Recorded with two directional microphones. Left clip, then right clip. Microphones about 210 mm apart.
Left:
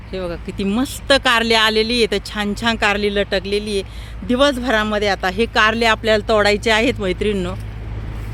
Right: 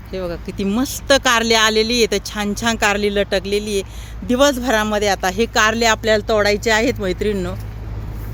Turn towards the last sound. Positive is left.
turn(degrees=10)  # may be behind; listen again after turning